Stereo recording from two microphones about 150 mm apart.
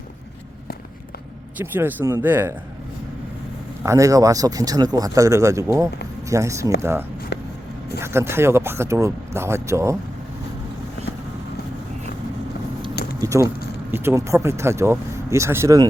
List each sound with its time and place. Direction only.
1.5 s speech: 15° right (ahead or behind)
3.8 s speech: 20° right (ahead or behind)
7.9 s speech: 15° right (ahead or behind)
13.2 s speech: 20° right (ahead or behind)